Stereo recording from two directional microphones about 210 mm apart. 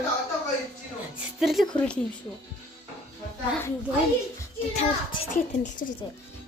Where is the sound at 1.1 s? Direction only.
Centre (ahead or behind).